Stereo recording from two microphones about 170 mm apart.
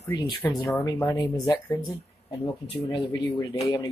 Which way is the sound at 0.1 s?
25° left (ahead or behind).